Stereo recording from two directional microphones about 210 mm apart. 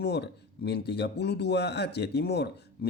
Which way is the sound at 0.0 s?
50° left (ahead or behind).